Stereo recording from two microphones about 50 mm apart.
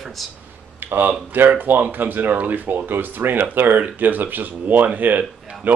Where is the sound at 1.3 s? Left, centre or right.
Right.